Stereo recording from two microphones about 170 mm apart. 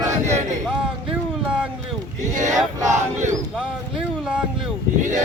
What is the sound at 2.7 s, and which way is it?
Battle cry, 15° right (ahead or behind).